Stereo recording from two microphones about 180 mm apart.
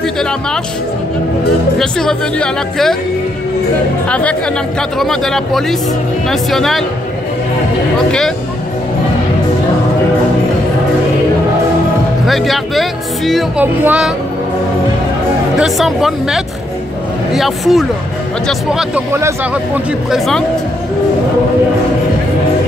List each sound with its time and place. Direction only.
1.8 s speech: 5° left (ahead or behind)
4.1 s speech: 5° left (ahead or behind)
12.3 s speech: centre (ahead or behind)
15.6 s speech: centre (ahead or behind)